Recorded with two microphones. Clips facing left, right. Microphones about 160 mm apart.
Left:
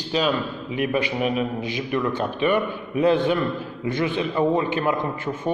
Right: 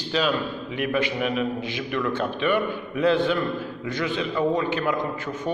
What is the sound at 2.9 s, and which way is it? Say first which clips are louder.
A man's voice: left 2 dB; 15° left (ahead or behind).